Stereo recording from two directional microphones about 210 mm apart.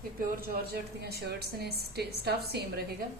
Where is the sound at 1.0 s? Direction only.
50° right (ahead or behind).